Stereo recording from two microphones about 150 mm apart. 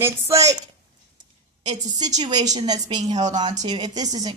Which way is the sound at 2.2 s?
30° right (ahead or behind).